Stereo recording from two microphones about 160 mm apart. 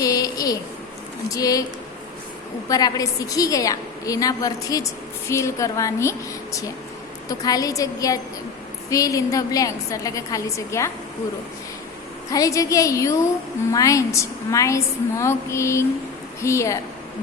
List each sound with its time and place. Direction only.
0.0 s a sound: 20° left (ahead or behind)
1.3 s a woman's voice: 20° left (ahead or behind)
2.6 s a woman's voice: 20° left (ahead or behind)
12.3 s a woman's voice: 20° left (ahead or behind)